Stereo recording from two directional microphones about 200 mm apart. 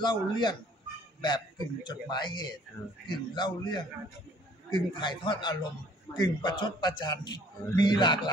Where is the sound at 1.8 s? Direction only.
20° left (ahead or behind).